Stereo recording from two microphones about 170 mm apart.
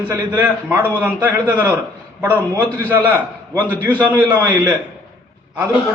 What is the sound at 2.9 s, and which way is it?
A man's voice, 10° right (ahead or behind).